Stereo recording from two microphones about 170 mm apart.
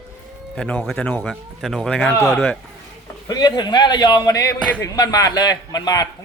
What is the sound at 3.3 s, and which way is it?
A man's voice, 25° left (ahead or behind).